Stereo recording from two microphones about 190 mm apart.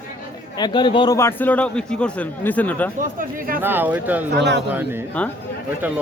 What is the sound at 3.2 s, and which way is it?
Speech, 50° right (ahead or behind).